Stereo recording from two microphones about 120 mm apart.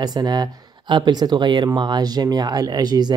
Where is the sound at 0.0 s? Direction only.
35° right (ahead or behind).